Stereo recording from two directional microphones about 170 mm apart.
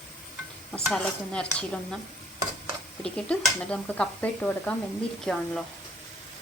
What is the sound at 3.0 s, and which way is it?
Speech, 5° left (ahead or behind).